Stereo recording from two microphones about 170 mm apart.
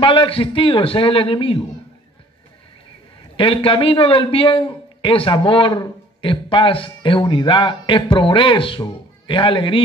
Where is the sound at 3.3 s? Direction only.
30° left (ahead or behind).